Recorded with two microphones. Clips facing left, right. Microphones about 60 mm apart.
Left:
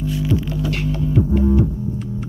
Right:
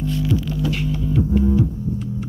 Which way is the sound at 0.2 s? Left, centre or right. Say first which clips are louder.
Left 1 dB; centre.